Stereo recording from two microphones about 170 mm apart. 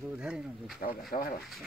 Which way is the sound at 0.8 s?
55° left (ahead or behind).